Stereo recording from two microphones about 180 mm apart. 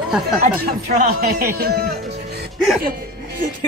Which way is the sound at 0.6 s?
50° right (ahead or behind).